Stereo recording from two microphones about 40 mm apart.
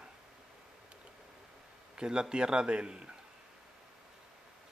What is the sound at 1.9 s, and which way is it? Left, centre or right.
Speech, right.